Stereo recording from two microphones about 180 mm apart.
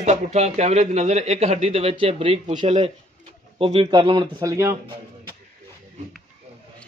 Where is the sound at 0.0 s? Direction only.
40° right (ahead or behind); by 4.7 s 15° right (ahead or behind).